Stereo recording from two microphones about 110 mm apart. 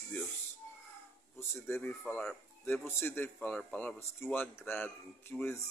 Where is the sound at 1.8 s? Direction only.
15° left (ahead or behind).